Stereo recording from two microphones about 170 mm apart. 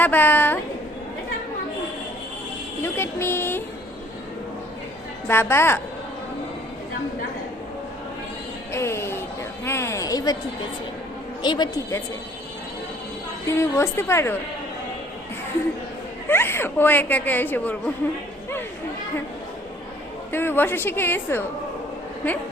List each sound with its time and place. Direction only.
0.0 s speech: 10° left (ahead or behind)
2.8 s speech: 15° left (ahead or behind)
5.3 s speech: 15° left (ahead or behind)
8.7 s music: 15° left (ahead or behind)
9.6 s a sound: 15° left (ahead or behind)
11.4 s speech: 25° left (ahead or behind)
13.5 s speech: 15° left (ahead or behind)
16.3 s speech: 15° left (ahead or behind)
20.3 s speech: 10° left (ahead or behind)